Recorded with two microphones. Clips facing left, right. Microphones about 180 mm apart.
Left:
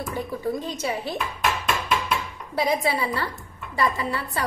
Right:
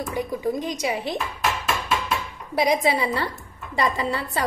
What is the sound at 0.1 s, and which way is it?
A woman's voice, 15° right (ahead or behind).